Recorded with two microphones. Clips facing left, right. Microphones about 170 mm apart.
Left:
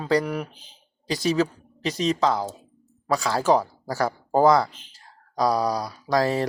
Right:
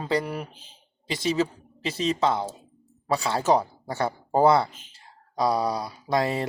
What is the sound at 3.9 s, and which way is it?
Speech, 25° right (ahead or behind).